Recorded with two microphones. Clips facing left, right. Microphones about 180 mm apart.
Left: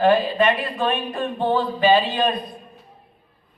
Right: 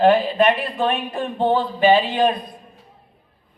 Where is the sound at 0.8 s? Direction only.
20° right (ahead or behind).